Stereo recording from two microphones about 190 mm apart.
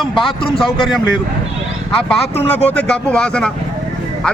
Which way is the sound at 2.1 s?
5° left (ahead or behind).